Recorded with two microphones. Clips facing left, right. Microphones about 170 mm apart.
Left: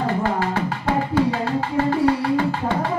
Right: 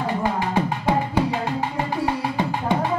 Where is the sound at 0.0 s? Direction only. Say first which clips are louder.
Left 2 dB; 15° right (ahead or behind).